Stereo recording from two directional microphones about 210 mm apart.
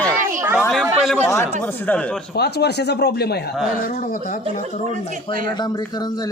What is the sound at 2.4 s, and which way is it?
A man's voice, 50° left (ahead or behind).